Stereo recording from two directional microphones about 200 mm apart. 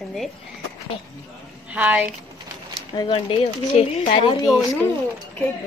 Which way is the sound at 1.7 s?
5° right (ahead or behind).